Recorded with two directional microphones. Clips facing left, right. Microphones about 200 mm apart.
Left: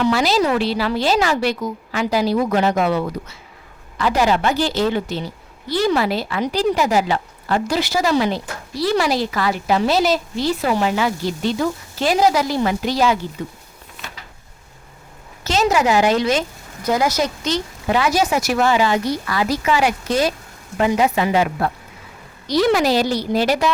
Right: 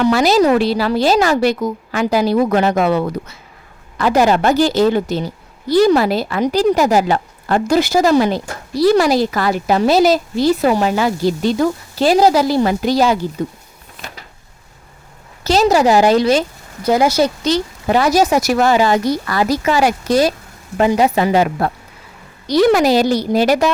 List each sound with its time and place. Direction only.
0.0 s a woman's voice: 50° right (ahead or behind)
15.4 s a woman's voice: 35° right (ahead or behind)
22.4 s a woman's voice: 50° right (ahead or behind)